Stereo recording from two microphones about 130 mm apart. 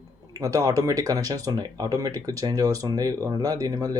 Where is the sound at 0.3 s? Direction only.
25° right (ahead or behind).